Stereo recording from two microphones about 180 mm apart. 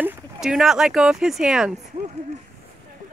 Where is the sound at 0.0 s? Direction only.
5° right (ahead or behind).